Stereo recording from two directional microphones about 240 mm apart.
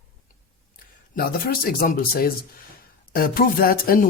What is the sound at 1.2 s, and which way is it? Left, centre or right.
Speech, left.